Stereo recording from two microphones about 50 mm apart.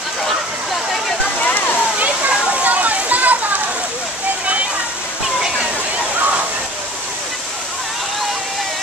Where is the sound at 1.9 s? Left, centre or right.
Right.